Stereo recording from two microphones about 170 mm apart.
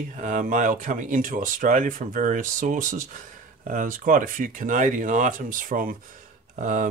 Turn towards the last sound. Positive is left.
turn(degrees=-50)  # may be behind; listen again after turning